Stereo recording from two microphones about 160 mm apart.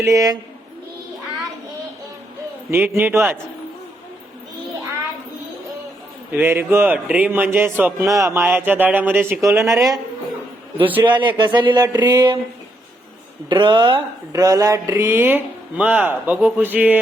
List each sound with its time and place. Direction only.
0.0 s speech: 20° right (ahead or behind)
2.6 s speech: 15° right (ahead or behind)
6.3 s speech: 15° right (ahead or behind)
11.0 s speech: 30° right (ahead or behind)
13.5 s speech: 30° right (ahead or behind); by 17.0 s 10° right (ahead or behind)